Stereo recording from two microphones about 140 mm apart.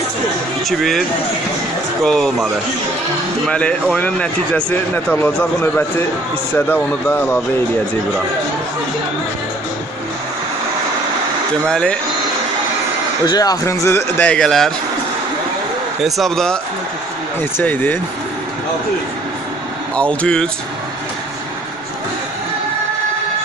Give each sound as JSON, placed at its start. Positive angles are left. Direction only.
{"t": 0.7, "sound": "speech", "side_deg": 0}
{"t": 2.0, "sound": "speech", "side_deg": 0}
{"t": 3.4, "sound": "speech", "side_deg": 5}
{"t": 11.6, "sound": "speech", "side_deg": 5}
{"t": 13.3, "sound": "speech", "side_deg": 25}
{"t": 13.8, "sound": "speech", "side_deg": 15}
{"t": 16.0, "sound": "speech", "side_deg": 0}
{"t": 17.4, "sound": "speech", "side_deg": 15}
{"t": 20.0, "sound": "speech", "side_deg": 10}